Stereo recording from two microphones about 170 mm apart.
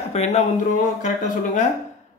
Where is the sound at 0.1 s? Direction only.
40° left (ahead or behind).